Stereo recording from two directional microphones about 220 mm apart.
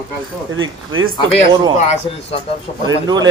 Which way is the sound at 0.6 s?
65° right (ahead or behind).